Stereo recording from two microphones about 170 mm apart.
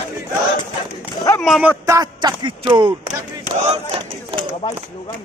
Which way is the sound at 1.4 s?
Centre (ahead or behind).